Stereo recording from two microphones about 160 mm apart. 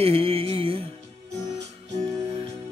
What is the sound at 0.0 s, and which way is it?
Mantra, 35° right (ahead or behind).